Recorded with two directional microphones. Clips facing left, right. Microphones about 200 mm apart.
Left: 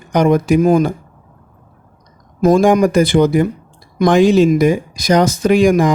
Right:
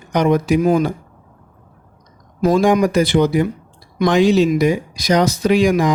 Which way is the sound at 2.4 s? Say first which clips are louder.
Left 3 dB; 50° left (ahead or behind).